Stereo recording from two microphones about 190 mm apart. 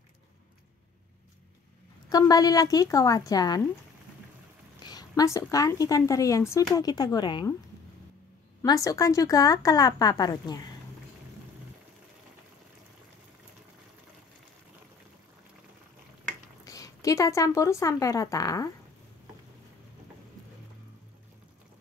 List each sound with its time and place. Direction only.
2.0 s speech: 20° left (ahead or behind)
4.8 s speech: 20° left (ahead or behind)
8.6 s speech: 20° left (ahead or behind)
16.6 s speech: 15° left (ahead or behind)